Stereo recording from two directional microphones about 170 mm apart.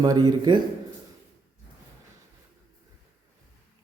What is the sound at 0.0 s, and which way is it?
Speech, 25° right (ahead or behind).